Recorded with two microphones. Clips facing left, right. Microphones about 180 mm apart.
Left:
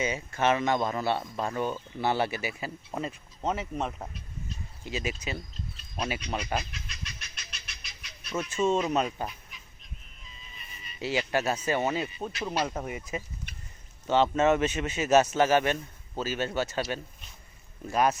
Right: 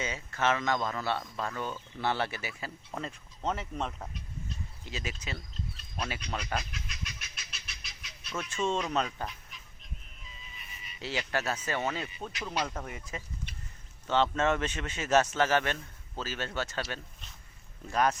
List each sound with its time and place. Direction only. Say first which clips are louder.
0.0 s speech: left 4 dB; 15° left (ahead or behind)
6.0 s fowl: left 4 dB; 5° left (ahead or behind)
10.2 s music: left 1 dB; 5° right (ahead or behind)
11.0 s speech: left 5 dB; 10° left (ahead or behind)
12.4 s speech: left 4 dB; 25° left (ahead or behind)
17.9 s speech: left 3 dB; 10° left (ahead or behind)